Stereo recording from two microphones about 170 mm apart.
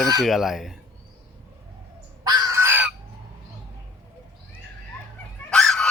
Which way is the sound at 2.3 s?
20° right (ahead or behind).